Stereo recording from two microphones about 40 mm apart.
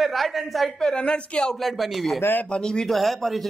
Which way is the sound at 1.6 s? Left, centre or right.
Centre.